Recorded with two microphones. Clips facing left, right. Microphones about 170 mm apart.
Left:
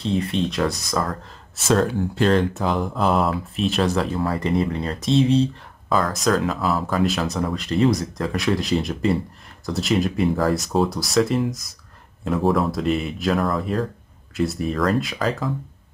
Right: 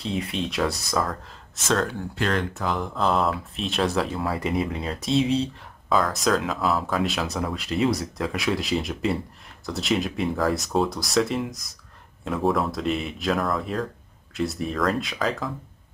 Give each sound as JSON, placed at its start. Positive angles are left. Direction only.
{"t": 0.0, "sound": "speech", "side_deg": -5}
{"t": 1.7, "sound": "speech", "side_deg": 10}
{"t": 2.1, "sound": "speech", "side_deg": 30}
{"t": 2.8, "sound": "speech", "side_deg": 10}